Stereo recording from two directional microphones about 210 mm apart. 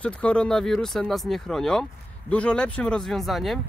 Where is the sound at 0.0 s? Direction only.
5° left (ahead or behind).